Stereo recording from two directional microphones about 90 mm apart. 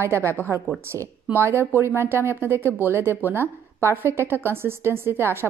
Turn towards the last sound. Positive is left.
turn(degrees=-25)  # may be behind; listen again after turning